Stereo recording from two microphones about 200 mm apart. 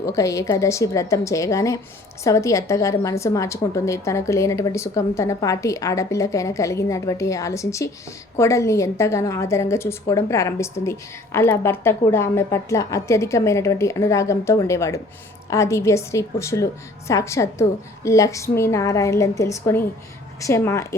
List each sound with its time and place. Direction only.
0.0 s a woman's voice: 15° left (ahead or behind)